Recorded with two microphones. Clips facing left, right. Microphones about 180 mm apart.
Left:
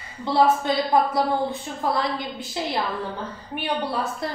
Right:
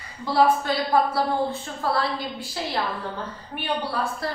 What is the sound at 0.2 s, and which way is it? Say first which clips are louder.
A woman's voice: left 1 dB; 20° left (ahead or behind).